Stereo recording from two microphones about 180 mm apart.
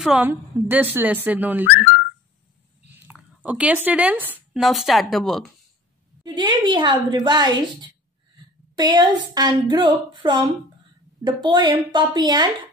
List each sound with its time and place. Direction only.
0.0 s speech: 5° right (ahead or behind)
2.9 s speech: 10° right (ahead or behind)
6.2 s speech: 25° right (ahead or behind)